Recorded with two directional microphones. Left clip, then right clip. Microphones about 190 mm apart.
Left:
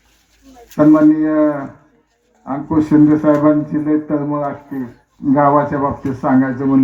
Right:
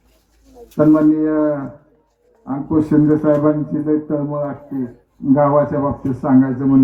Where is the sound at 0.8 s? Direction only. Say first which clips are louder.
Left 2 dB; 20° left (ahead or behind).